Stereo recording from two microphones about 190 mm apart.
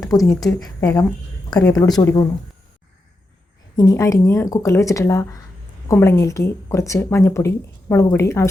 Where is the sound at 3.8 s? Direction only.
20° left (ahead or behind).